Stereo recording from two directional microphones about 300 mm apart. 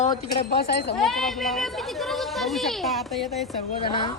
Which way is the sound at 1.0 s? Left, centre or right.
Centre.